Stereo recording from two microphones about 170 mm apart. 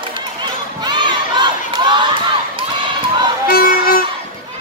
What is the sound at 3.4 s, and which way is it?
Music, 60° left (ahead or behind).